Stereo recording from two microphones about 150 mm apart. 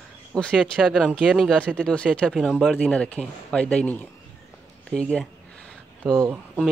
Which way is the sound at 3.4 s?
5° left (ahead or behind).